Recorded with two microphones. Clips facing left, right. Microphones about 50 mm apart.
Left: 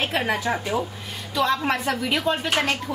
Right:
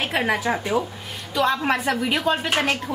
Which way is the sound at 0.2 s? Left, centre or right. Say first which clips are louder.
Right 2 dB; centre.